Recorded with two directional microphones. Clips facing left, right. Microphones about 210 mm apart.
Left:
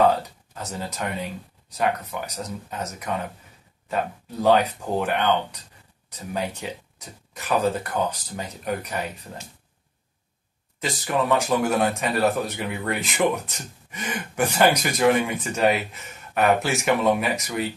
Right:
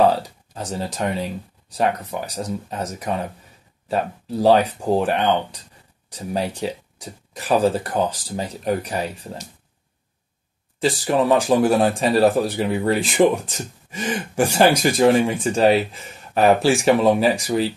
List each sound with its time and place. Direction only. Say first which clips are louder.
0.6 s speech: right 5 dB; 30° right (ahead or behind)
10.8 s speech: right 6 dB; 30° right (ahead or behind)